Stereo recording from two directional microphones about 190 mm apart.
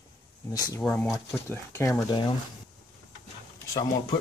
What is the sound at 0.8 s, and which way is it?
Speech, 5° left (ahead or behind).